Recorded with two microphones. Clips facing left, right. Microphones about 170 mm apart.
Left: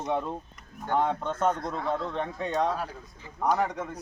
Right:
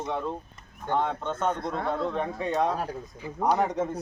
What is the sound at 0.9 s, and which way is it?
Speech, 5° left (ahead or behind).